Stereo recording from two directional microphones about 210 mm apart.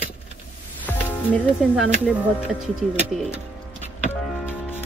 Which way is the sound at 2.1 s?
Centre (ahead or behind).